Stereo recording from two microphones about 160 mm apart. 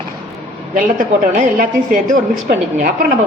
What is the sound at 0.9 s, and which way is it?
A man's voice, 55° right (ahead or behind).